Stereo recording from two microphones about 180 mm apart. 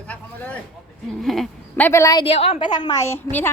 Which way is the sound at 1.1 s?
Centre (ahead or behind).